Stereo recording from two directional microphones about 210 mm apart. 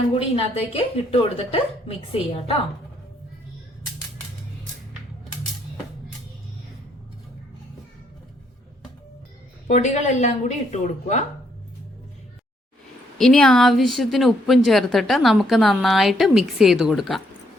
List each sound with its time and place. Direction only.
0.1 s a woman's voice: 30° left (ahead or behind)
9.6 s speech: 35° left (ahead or behind)
13.1 s a woman's voice: centre (ahead or behind)